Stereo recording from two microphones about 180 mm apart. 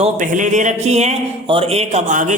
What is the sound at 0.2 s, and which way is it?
Speech, 45° right (ahead or behind).